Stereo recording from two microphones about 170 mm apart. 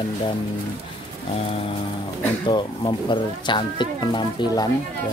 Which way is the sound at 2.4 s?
30° left (ahead or behind).